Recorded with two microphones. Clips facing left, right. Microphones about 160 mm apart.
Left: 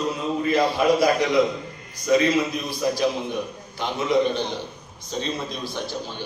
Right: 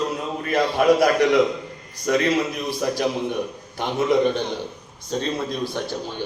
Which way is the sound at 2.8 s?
60° right (ahead or behind).